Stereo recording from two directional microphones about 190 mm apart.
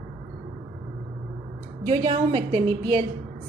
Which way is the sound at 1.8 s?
30° right (ahead or behind).